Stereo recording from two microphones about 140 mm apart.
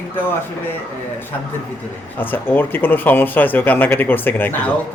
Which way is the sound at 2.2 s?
15° left (ahead or behind).